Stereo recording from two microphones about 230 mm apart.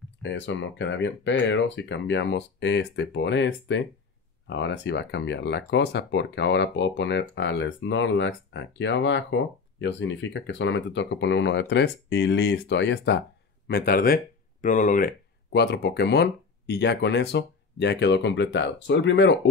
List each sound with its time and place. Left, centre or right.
0.2 s speech: left